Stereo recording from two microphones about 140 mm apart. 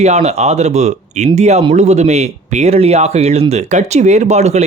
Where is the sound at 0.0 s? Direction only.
50° right (ahead or behind).